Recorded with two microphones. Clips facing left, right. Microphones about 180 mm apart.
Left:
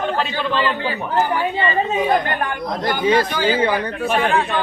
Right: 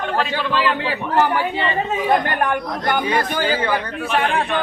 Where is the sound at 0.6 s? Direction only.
75° right (ahead or behind).